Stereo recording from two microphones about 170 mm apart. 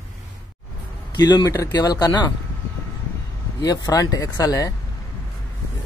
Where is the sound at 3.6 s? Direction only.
25° left (ahead or behind).